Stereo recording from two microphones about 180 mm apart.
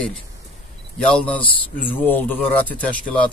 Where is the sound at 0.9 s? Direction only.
5° left (ahead or behind).